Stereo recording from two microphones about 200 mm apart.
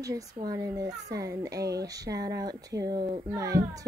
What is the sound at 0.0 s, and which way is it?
Speech, 15° right (ahead or behind).